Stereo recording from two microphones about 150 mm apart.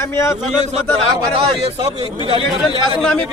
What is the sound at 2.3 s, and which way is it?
Speech, 30° left (ahead or behind).